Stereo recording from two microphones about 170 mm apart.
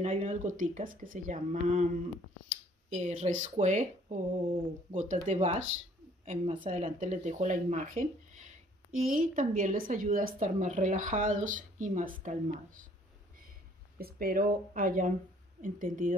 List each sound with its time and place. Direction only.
0.0 s speech: 45° right (ahead or behind)
2.9 s a woman's voice: 40° right (ahead or behind)
13.9 s speech: 60° right (ahead or behind)